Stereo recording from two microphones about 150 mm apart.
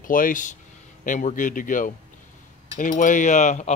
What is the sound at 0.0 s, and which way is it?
Speech, 65° left (ahead or behind).